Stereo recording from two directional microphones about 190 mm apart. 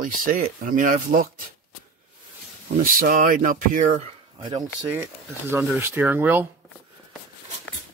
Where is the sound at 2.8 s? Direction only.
50° right (ahead or behind).